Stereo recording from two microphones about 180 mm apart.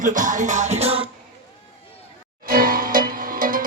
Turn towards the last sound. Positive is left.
turn(degrees=-50)  # may be behind; listen again after turning